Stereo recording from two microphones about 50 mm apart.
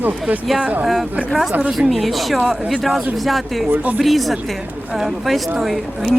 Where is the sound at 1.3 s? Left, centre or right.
Centre.